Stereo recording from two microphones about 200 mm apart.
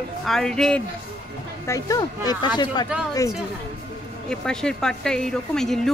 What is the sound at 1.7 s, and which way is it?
Speech, 15° left (ahead or behind).